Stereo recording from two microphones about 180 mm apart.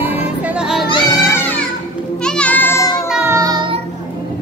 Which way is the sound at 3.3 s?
20° right (ahead or behind).